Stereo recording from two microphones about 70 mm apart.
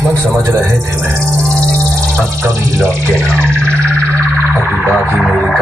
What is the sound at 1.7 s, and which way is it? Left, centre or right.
Music, right.